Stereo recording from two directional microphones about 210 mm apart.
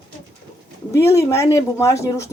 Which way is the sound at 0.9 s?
15° left (ahead or behind).